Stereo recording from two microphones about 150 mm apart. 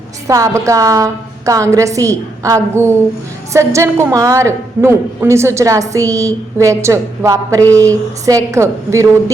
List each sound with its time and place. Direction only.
0.3 s a woman's voice: 20° right (ahead or behind)